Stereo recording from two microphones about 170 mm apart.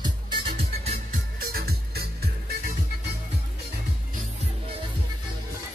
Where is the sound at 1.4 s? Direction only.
65° right (ahead or behind).